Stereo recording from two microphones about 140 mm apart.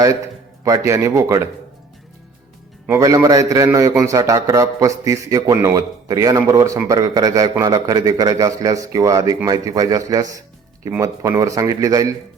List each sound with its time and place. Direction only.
0.9 s a man's voice: 20° right (ahead or behind)
2.8 s a man's voice: 20° right (ahead or behind)